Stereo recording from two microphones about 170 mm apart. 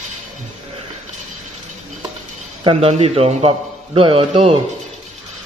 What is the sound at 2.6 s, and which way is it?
A man's voice, 35° right (ahead or behind).